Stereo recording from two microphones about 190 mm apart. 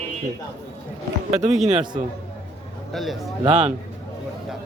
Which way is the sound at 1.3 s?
35° right (ahead or behind).